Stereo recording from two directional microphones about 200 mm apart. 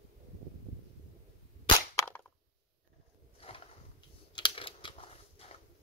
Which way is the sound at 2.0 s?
10° left (ahead or behind).